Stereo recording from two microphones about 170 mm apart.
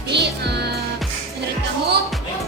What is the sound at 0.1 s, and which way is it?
Music, 80° right.